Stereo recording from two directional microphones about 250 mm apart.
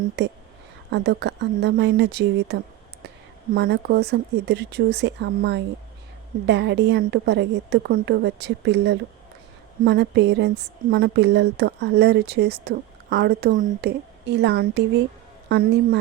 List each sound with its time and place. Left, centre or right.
0.2 s a woman's voice: right